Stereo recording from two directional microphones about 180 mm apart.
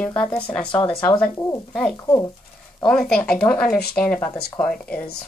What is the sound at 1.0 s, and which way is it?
Speech, 5° left (ahead or behind).